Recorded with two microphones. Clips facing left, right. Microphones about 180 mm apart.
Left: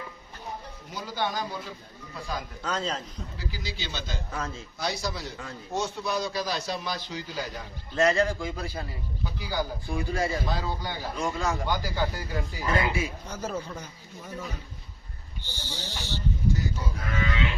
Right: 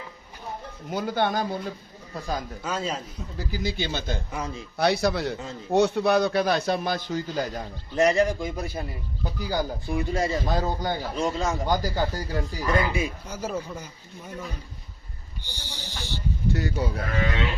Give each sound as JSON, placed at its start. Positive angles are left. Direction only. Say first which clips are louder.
{"t": 0.9, "sound": "a man's voice", "louder": "right 6 dB", "side_deg": -55}
{"t": 2.6, "sound": "speech", "louder": "right 1 dB", "side_deg": -10}
{"t": 3.3, "sound": "speech", "louder": "right 10 dB", "side_deg": -50}
{"t": 4.3, "sound": "speech", "louder": "right 2 dB", "side_deg": -15}
{"t": 4.8, "sound": "a man's voice", "louder": "right 9 dB", "side_deg": -65}
{"t": 7.9, "sound": "a man's voice", "louder": "right 3 dB", "side_deg": -15}
{"t": 9.2, "sound": "speech", "louder": "right 3 dB", "side_deg": -45}
{"t": 9.9, "sound": "a man's voice", "louder": "right 3 dB", "side_deg": -25}
{"t": 10.5, "sound": "speech", "louder": "right 6 dB", "side_deg": -45}
{"t": 11.1, "sound": "a man's voice", "louder": "even", "side_deg": -20}
{"t": 11.7, "sound": "speech", "louder": "right 4 dB", "side_deg": -40}
{"t": 12.9, "sound": "speech", "louder": "right 2 dB", "side_deg": -15}
{"t": 15.4, "sound": "speech", "louder": "left 2 dB", "side_deg": -15}
{"t": 16.5, "sound": "a man's voice", "louder": "right 6 dB", "side_deg": -65}